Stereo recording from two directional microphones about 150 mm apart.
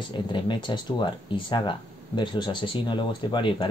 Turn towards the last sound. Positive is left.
turn(degrees=30)  # may be behind; listen again after turning